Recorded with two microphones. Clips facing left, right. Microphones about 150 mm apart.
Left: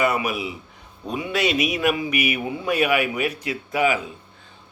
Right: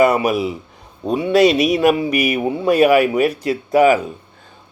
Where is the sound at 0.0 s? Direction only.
40° right (ahead or behind).